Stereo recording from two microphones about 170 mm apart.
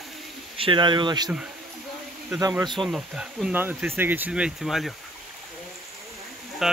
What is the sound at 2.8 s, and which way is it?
Speech, 5° right (ahead or behind).